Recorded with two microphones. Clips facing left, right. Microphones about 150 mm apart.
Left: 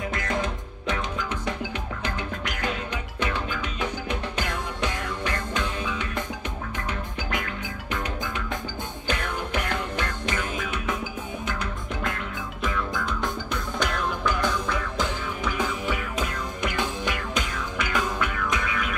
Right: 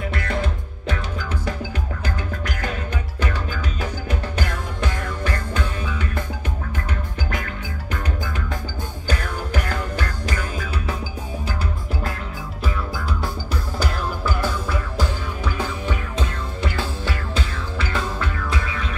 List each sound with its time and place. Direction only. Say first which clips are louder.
0.4 s music: right 2 dB; 35° right (ahead or behind)
7.2 s music: even; 40° right (ahead or behind)
12.9 s music: right 1 dB; 5° right (ahead or behind)
16.6 s music: right 1 dB; 15° left (ahead or behind)
17.4 s music: right 1 dB; 30° right (ahead or behind)
17.9 s music: left 1 dB; 15° left (ahead or behind)
18.7 s music: even; 30° right (ahead or behind)